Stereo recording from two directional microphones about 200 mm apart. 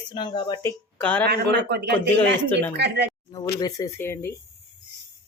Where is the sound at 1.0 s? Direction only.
10° left (ahead or behind).